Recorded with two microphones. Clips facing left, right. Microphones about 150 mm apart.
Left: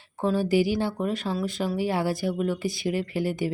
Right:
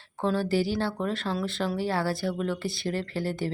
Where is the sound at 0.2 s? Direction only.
10° left (ahead or behind).